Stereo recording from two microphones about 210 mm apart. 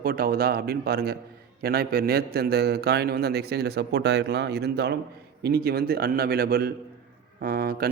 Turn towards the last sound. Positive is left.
turn(degrees=-45)  # may be behind; listen again after turning